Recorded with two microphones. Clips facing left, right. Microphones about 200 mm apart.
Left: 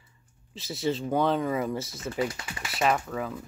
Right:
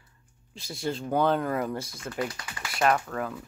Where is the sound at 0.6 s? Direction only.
5° left (ahead or behind).